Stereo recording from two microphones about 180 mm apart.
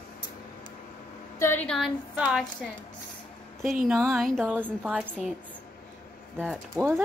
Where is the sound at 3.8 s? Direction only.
Centre (ahead or behind).